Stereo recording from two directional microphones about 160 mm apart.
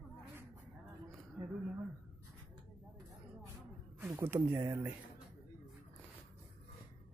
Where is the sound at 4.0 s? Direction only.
15° right (ahead or behind).